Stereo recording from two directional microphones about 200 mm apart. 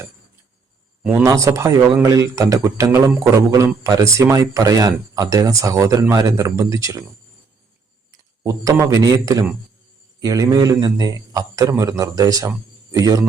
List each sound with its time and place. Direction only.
1.0 s a man's voice: 10° right (ahead or behind)
8.1 s a man's voice: 15° right (ahead or behind)